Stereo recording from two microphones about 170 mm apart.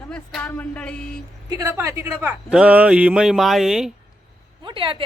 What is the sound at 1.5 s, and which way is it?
Speech, 20° right (ahead or behind).